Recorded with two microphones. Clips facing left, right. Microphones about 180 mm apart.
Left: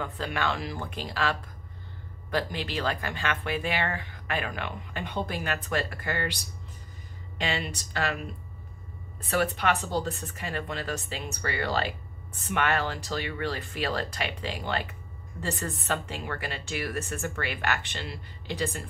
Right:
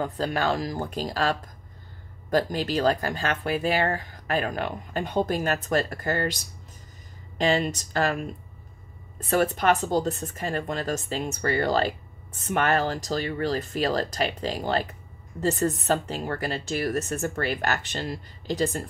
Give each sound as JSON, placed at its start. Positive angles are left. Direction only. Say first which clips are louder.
{"t": 0.0, "sound": "speech", "louder": "right 5 dB", "side_deg": -40}
{"t": 9.3, "sound": "speech", "louder": "right 4 dB", "side_deg": -45}